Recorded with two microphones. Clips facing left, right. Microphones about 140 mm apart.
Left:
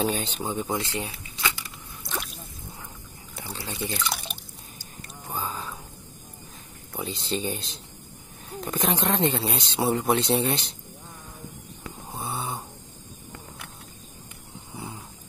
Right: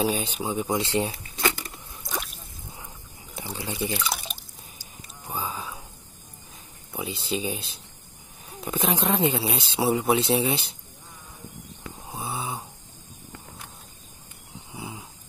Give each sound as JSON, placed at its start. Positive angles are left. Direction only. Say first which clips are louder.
{"t": 0.0, "sound": "speech", "louder": "right 1 dB", "side_deg": -10}
{"t": 1.4, "sound": "a sound", "louder": "right 4 dB", "side_deg": -50}
{"t": 2.0, "sound": "drip", "louder": "right 1 dB", "side_deg": 0}
{"t": 3.3, "sound": "speech", "louder": "right 3 dB", "side_deg": -15}
{"t": 6.9, "sound": "speech", "louder": "even", "side_deg": -5}
{"t": 12.1, "sound": "a sound", "louder": "even", "side_deg": 0}
{"t": 14.7, "sound": "snoring", "louder": "even", "side_deg": -5}